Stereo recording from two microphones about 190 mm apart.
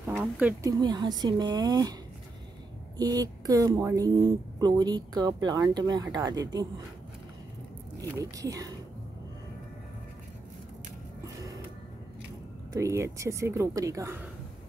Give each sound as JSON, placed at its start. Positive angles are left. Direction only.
{"t": 0.1, "sound": "a woman's voice", "side_deg": -5}
{"t": 0.7, "sound": "speech", "side_deg": -20}
{"t": 3.0, "sound": "speech", "side_deg": -20}
{"t": 8.0, "sound": "a woman's voice", "side_deg": -15}
{"t": 12.8, "sound": "a woman's voice", "side_deg": -15}